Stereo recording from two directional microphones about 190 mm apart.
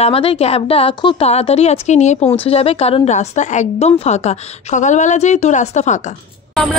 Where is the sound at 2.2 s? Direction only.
10° left (ahead or behind).